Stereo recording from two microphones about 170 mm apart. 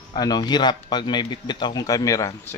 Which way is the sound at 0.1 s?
25° left (ahead or behind).